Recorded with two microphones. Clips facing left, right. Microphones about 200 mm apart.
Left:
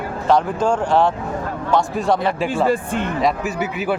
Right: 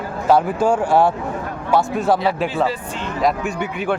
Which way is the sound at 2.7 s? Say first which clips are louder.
Left 6 dB; 55° left (ahead or behind).